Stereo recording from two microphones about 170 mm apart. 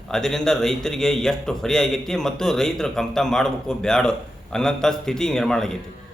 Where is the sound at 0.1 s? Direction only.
5° left (ahead or behind).